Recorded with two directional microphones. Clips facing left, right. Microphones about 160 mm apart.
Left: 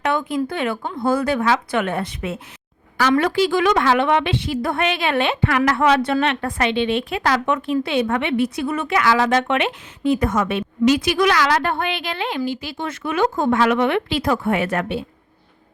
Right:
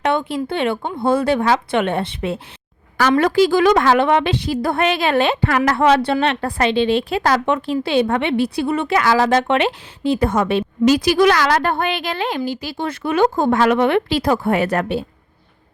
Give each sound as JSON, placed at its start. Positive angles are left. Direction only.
{"t": 0.0, "sound": "speech", "side_deg": -30}
{"t": 3.0, "sound": "a woman's voice", "side_deg": -45}